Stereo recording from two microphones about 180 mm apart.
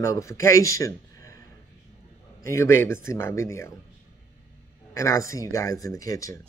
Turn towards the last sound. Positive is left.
turn(degrees=20)  # may be behind; listen again after turning